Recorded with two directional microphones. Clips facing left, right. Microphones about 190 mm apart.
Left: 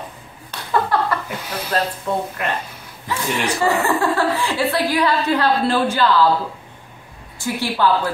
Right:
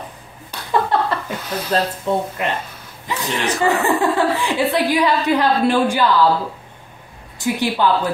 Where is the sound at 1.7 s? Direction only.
25° right (ahead or behind).